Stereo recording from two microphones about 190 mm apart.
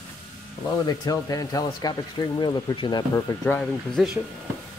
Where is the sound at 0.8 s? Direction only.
20° left (ahead or behind).